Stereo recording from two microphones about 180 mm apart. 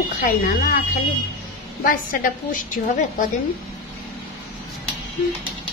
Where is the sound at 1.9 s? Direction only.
50° left (ahead or behind).